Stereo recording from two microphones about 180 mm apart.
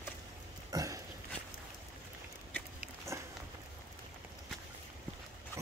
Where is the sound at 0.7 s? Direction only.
20° right (ahead or behind).